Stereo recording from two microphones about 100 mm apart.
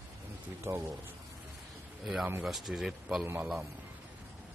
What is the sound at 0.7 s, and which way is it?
Speech, 25° right (ahead or behind).